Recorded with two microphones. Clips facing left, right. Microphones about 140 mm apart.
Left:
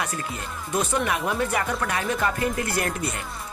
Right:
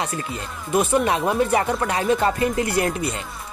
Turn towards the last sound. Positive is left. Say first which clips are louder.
# right 5 dB
turn(degrees=-20)  # may be behind; listen again after turning